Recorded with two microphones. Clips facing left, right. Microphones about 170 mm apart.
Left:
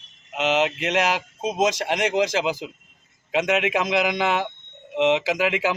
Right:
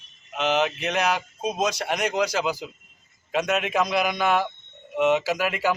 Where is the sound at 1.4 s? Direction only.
20° left (ahead or behind).